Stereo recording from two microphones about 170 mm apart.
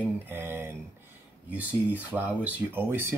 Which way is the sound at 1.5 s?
10° right (ahead or behind).